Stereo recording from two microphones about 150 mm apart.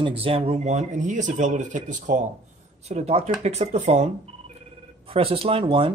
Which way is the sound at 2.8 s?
45° right (ahead or behind).